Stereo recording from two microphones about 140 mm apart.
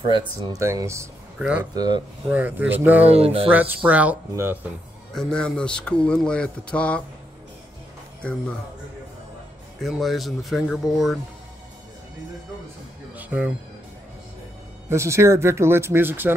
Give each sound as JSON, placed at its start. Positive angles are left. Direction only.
{"t": 0.0, "sound": "speech", "side_deg": -35}
{"t": 0.6, "sound": "speech", "side_deg": -20}
{"t": 1.4, "sound": "speech", "side_deg": -10}
{"t": 1.7, "sound": "speech", "side_deg": -30}
{"t": 2.2, "sound": "speech", "side_deg": -10}
{"t": 3.1, "sound": "speech", "side_deg": -45}
{"t": 3.5, "sound": "speech", "side_deg": -10}
{"t": 5.1, "sound": "speech", "side_deg": 5}
{"t": 8.2, "sound": "speech", "side_deg": 10}
{"t": 9.8, "sound": "speech", "side_deg": 0}
{"t": 13.1, "sound": "music", "side_deg": -10}
{"t": 14.9, "sound": "speech", "side_deg": -20}